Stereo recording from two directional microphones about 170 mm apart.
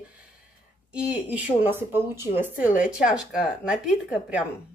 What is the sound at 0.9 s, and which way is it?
Speech, 10° right (ahead or behind).